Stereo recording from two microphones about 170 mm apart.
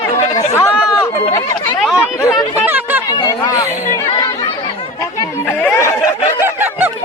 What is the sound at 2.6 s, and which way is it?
Chatter, 10° right (ahead or behind).